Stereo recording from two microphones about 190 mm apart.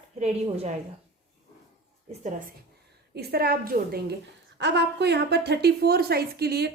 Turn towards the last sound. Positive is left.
turn(degrees=-60)  # may be behind; listen again after turning